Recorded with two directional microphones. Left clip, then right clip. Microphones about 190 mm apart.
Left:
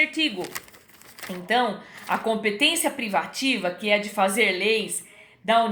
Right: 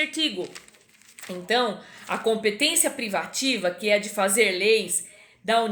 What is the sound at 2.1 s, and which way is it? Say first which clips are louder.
A woman's voice: even; 20° right (ahead or behind).